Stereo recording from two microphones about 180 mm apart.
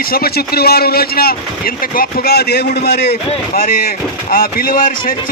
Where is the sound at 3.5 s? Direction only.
55° left (ahead or behind).